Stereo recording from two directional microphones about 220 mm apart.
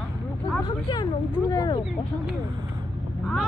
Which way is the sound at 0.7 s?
20° left (ahead or behind).